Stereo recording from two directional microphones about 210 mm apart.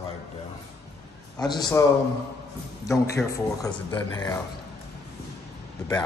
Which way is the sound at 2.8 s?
15° left (ahead or behind).